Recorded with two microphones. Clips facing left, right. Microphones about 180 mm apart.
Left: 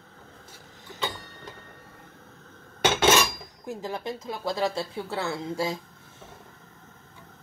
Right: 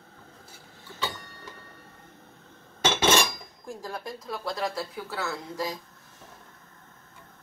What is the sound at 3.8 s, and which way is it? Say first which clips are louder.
Speech: left 4 dB; 25° left (ahead or behind).